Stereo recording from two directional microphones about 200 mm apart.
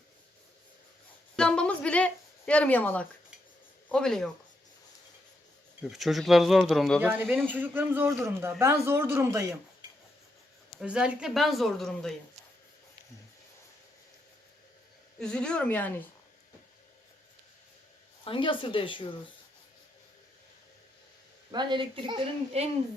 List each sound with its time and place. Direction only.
1.4 s speech: 5° left (ahead or behind)
5.8 s speech: centre (ahead or behind)
10.8 s speech: 5° right (ahead or behind)
15.2 s speech: 5° left (ahead or behind)
18.3 s speech: 25° left (ahead or behind)
21.5 s a child's voice: 20° right (ahead or behind)